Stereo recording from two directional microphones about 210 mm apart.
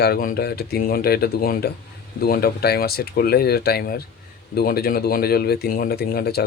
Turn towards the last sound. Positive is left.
turn(degrees=45)  # may be behind; listen again after turning